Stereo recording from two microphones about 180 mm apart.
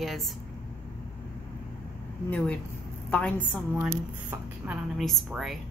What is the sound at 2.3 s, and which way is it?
A woman's voice, 5° left (ahead or behind).